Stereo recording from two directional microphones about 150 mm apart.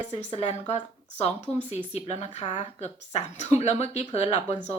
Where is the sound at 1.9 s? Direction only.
45° left (ahead or behind).